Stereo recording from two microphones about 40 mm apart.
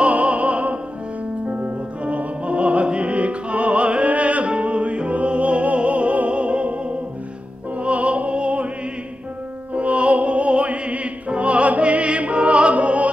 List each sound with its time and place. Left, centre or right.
0.0 s opera: right
1.5 s music: right
9.8 s opera: right